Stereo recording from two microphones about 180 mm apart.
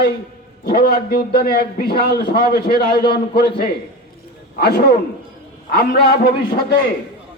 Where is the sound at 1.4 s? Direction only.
60° left (ahead or behind).